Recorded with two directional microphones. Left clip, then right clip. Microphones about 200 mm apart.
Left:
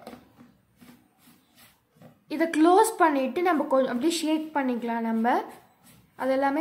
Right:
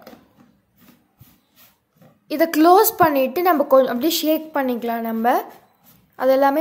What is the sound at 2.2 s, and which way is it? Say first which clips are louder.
A woman's voice: right 7 dB; 20° right (ahead or behind).